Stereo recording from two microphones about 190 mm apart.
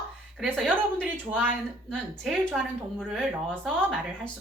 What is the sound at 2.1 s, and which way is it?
A woman's voice, 5° left (ahead or behind).